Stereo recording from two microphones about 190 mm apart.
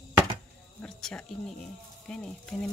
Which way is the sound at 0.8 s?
5° left (ahead or behind).